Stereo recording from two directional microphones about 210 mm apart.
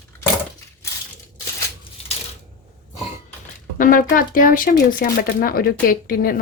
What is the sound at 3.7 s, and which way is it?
A woman's voice, 40° left (ahead or behind).